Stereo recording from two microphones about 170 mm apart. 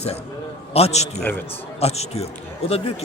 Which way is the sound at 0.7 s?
40° left (ahead or behind).